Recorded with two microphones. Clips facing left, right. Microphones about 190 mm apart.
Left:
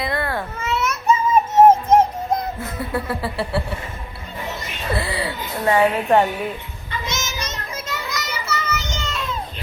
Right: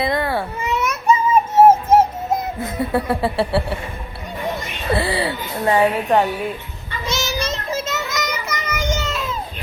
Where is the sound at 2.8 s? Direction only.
25° right (ahead or behind).